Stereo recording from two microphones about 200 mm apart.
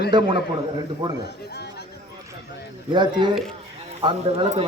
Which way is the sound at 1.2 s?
55° left (ahead or behind).